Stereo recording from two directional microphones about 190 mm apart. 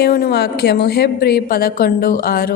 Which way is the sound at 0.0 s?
55° left (ahead or behind).